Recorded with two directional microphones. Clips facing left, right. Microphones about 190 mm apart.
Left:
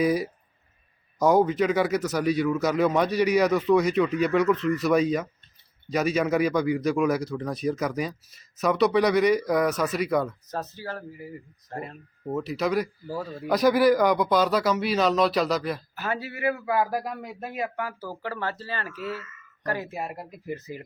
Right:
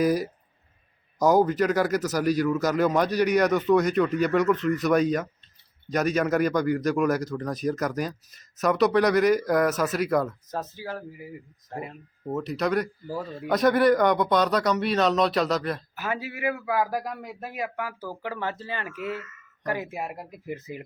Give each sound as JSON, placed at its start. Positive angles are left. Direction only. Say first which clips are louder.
{"t": 0.0, "sound": "speech", "louder": "even", "side_deg": 0}
{"t": 16.0, "sound": "a man's voice", "louder": "even", "side_deg": -10}